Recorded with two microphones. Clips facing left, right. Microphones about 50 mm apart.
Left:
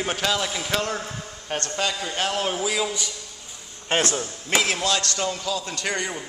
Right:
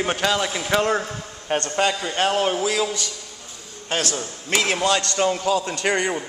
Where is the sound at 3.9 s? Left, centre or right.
Left.